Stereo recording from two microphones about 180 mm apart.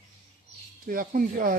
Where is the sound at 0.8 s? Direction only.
50° right (ahead or behind).